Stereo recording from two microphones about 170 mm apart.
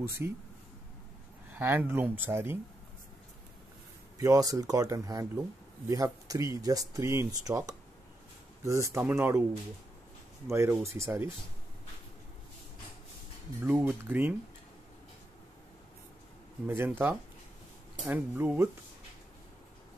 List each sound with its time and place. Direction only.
0.2 s speech: 15° right (ahead or behind)
1.5 s speech: 10° right (ahead or behind)
4.2 s speech: 20° right (ahead or behind)
10.4 s speech: 15° right (ahead or behind)
13.7 s speech: 10° right (ahead or behind)
16.6 s speech: 15° right (ahead or behind)